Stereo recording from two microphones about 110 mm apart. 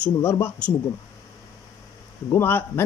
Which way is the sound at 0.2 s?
20° left (ahead or behind).